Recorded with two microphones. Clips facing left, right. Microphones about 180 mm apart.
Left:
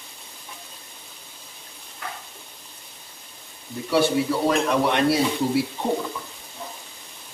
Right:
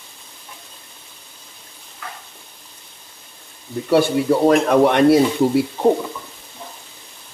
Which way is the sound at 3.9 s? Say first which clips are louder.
Right 5 dB; 50° right (ahead or behind).